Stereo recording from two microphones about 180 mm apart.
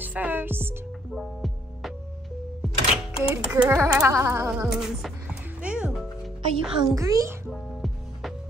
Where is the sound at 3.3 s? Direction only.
10° right (ahead or behind).